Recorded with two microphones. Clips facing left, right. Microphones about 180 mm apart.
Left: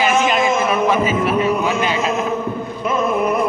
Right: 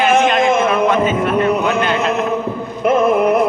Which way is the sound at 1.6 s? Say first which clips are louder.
Right 2 dB; 60° right (ahead or behind).